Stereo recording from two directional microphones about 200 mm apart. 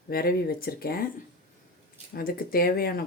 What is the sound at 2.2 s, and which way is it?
Speech, 45° left (ahead or behind).